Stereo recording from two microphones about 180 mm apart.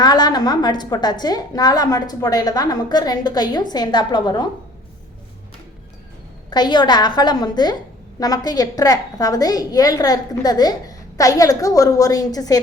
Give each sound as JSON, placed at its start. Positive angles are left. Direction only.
{"t": 0.0, "sound": "a woman's voice", "side_deg": 25}
{"t": 6.5, "sound": "a woman's voice", "side_deg": 25}